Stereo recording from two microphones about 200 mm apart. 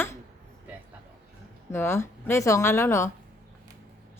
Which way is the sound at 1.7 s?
15° left (ahead or behind).